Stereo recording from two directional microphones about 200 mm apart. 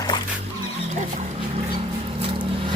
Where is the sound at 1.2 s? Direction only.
35° right (ahead or behind).